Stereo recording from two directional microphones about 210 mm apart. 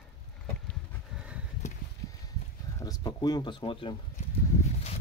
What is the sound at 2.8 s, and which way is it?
Speech, 20° left (ahead or behind).